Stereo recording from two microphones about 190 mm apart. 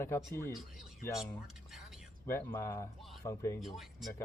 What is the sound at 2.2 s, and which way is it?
Speech, 10° left (ahead or behind).